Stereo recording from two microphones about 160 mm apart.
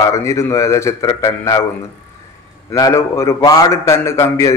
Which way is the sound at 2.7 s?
20° left (ahead or behind).